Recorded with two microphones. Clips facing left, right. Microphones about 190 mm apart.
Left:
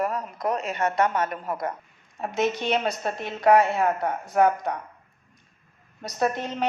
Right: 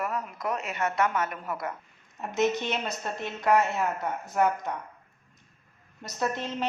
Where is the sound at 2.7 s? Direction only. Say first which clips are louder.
Left 7 dB; 70° left (ahead or behind).